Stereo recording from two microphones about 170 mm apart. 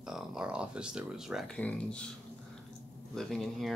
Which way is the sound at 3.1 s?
Centre (ahead or behind).